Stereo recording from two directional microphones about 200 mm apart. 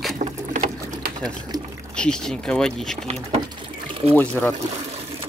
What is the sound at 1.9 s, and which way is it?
Speech, 5° left (ahead or behind).